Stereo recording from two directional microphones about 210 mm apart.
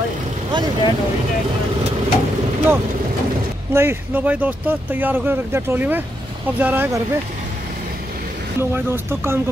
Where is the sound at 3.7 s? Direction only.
10° right (ahead or behind).